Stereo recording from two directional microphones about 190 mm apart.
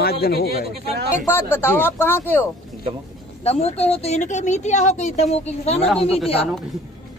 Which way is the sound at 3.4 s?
30° left (ahead or behind).